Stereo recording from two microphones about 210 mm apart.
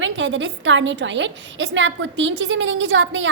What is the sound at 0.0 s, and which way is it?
A woman's voice, 65° right (ahead or behind).